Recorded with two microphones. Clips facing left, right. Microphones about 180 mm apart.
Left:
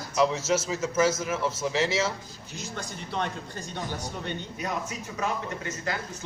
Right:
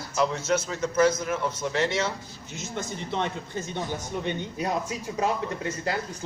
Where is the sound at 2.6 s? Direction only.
20° right (ahead or behind).